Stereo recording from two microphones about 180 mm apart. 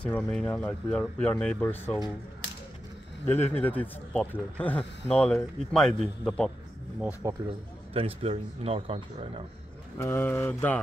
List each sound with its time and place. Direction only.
0.0 s speech: 5° left (ahead or behind)
3.3 s speech: 10° left (ahead or behind)
7.0 s speech: 10° right (ahead or behind)
7.9 s a man's voice: 30° right (ahead or behind)
9.9 s speech: 15° left (ahead or behind)